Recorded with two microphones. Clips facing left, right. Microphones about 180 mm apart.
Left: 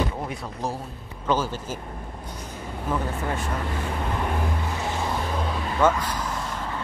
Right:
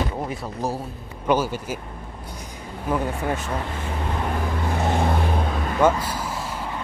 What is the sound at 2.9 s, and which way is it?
Speech, 10° right (ahead or behind).